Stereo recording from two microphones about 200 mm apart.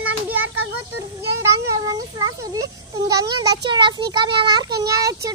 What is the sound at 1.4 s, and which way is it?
A child's voice, 15° right (ahead or behind).